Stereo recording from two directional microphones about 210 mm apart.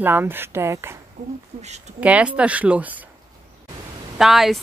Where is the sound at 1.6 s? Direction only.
30° right (ahead or behind).